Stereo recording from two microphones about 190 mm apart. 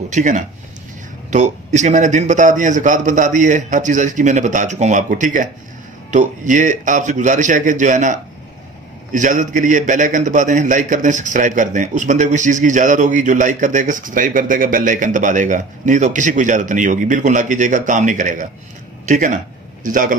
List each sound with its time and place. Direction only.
0.1 s a man's voice: 40° right (ahead or behind)